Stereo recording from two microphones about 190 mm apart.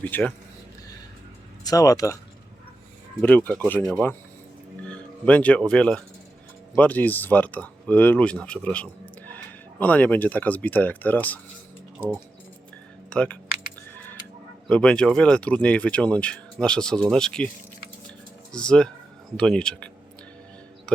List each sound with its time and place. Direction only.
0.0 s speech: 10° left (ahead or behind)
1.6 s speech: 20° left (ahead or behind)
3.2 s speech: 10° left (ahead or behind)
13.1 s speech: 5° left (ahead or behind)
14.7 s speech: 5° left (ahead or behind)
18.5 s speech: 5° left (ahead or behind)